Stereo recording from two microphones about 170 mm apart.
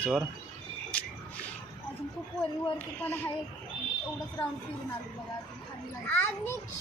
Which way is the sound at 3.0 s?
10° left (ahead or behind).